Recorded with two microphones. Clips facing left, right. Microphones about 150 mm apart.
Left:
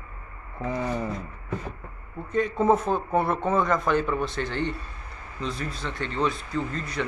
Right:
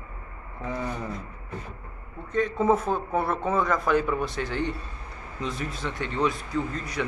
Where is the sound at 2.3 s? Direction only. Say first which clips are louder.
Left 1 dB; centre (ahead or behind).